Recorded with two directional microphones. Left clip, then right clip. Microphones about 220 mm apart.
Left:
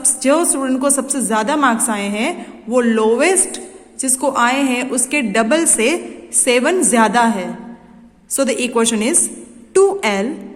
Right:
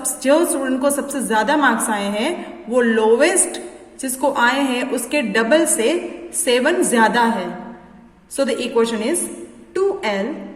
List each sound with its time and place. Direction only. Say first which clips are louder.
0.0 s a woman's voice: left 1 dB; 25° left (ahead or behind)